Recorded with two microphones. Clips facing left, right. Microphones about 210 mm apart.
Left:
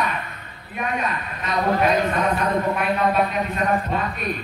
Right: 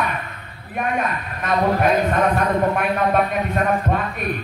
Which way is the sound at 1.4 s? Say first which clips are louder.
Right 2 dB; 50° right (ahead or behind).